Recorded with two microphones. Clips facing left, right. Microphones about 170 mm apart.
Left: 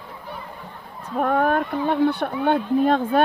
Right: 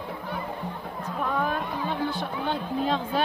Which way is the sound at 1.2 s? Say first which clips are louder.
Left 8 dB; 60° left (ahead or behind).